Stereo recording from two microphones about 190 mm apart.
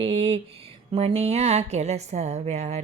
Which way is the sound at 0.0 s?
30° right (ahead or behind).